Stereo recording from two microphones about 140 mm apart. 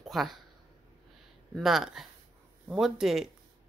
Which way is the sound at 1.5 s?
Centre (ahead or behind).